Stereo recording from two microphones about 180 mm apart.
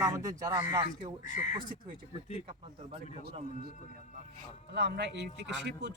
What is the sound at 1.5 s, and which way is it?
Music, 25° right (ahead or behind).